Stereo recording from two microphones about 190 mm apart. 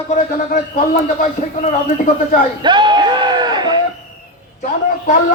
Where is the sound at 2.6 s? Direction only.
25° right (ahead or behind).